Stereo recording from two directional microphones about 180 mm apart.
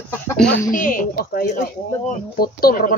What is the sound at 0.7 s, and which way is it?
Speech, 45° left (ahead or behind).